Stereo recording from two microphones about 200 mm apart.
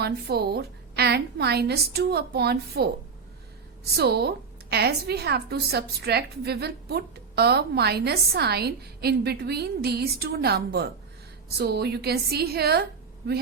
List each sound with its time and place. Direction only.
0.0 s a woman's voice: 50° right (ahead or behind)
3.9 s a woman's voice: 50° right (ahead or behind)